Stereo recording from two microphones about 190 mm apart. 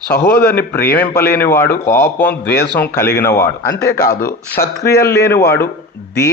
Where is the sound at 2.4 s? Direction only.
60° left (ahead or behind).